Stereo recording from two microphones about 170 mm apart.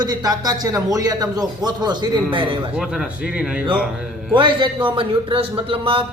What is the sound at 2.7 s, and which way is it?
Speech, 5° right (ahead or behind).